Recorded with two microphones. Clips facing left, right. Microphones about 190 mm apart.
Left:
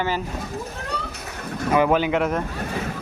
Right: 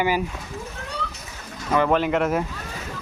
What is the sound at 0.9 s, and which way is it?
Cat, 60° left (ahead or behind).